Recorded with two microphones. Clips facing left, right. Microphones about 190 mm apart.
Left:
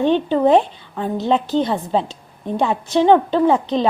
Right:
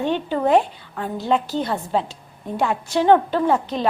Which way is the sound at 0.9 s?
20° left (ahead or behind).